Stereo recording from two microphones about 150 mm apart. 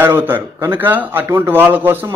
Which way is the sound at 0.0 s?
15° right (ahead or behind).